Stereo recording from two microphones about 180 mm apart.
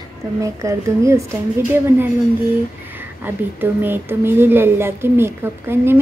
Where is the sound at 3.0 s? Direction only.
10° right (ahead or behind).